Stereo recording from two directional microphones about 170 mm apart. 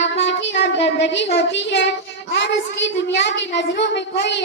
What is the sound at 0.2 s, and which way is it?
A child's voice, 90° left.